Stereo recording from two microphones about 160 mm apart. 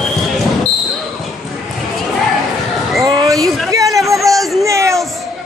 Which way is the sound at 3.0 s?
25° right (ahead or behind).